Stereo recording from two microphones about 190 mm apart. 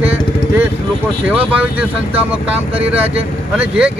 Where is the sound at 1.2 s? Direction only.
5° right (ahead or behind).